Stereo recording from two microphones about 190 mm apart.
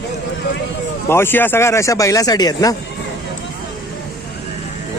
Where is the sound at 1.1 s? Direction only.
10° left (ahead or behind).